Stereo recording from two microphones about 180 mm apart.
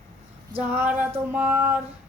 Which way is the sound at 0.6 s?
10° right (ahead or behind).